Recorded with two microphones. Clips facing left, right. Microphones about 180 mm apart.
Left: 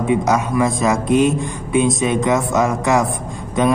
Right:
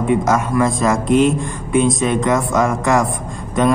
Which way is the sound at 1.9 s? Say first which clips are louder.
Even; 20° left (ahead or behind).